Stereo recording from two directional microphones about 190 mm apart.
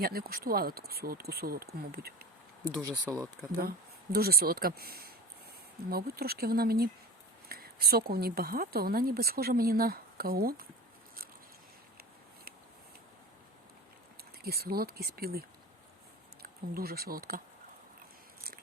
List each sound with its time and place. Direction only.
0.0 s speech: 50° right (ahead or behind)
2.6 s speech: 15° right (ahead or behind)
3.6 s speech: 55° right (ahead or behind)
14.4 s speech: 55° right (ahead or behind)